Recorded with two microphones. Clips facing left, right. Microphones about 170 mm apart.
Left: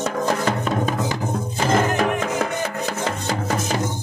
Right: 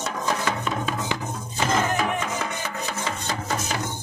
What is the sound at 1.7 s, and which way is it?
Music, 60° left (ahead or behind).